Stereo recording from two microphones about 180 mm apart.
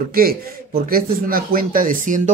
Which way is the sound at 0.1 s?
55° right (ahead or behind).